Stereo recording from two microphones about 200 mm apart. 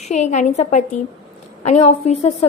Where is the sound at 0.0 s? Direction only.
35° left (ahead or behind).